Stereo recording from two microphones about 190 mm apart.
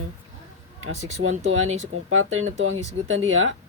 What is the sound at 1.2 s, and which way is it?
Speech, 90° right.